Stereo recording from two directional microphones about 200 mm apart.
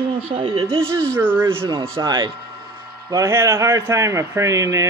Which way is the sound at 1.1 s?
10° right (ahead or behind).